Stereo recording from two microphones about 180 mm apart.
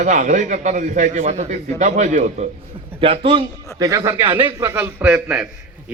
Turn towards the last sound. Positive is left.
turn(degrees=-5)  # may be behind; listen again after turning